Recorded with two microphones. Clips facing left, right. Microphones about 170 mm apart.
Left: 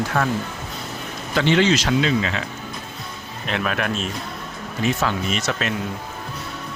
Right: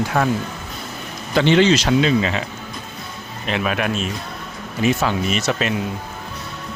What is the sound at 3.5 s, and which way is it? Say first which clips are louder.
Speech: right 2 dB; 5° right (ahead or behind).